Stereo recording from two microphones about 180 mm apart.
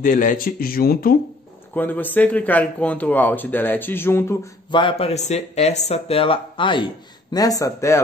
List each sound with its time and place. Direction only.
0.0 s speech: 45° left (ahead or behind)
1.8 s speech: 10° left (ahead or behind)
4.6 s speech: 25° left (ahead or behind)